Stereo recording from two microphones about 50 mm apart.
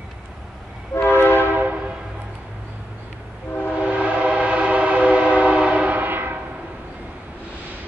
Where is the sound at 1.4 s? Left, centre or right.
Right.